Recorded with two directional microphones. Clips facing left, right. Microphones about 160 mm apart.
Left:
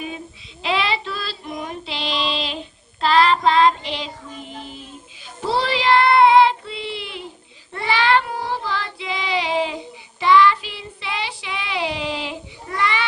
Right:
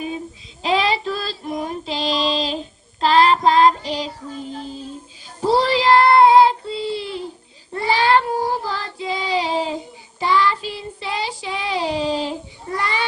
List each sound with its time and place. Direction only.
0.6 s child singing: 40° right (ahead or behind)
5.4 s child singing: 40° right (ahead or behind)